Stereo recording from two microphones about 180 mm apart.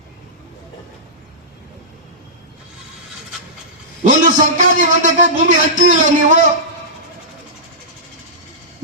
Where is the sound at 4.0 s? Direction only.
45° right (ahead or behind).